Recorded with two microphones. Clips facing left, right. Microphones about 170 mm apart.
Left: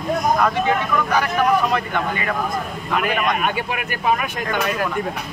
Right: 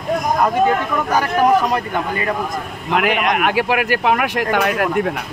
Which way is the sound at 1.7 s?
35° right (ahead or behind).